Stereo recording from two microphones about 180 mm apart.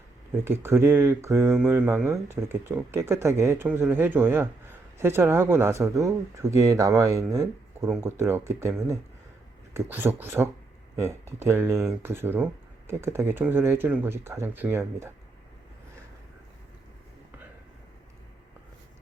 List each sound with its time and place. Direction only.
0.4 s speech: 15° right (ahead or behind)